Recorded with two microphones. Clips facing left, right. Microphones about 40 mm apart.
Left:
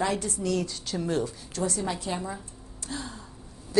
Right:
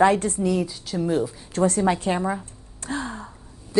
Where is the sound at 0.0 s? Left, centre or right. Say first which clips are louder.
Right 10 dB; right.